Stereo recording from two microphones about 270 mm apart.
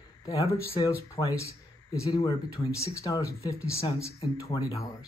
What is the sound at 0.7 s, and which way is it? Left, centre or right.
Speech, centre.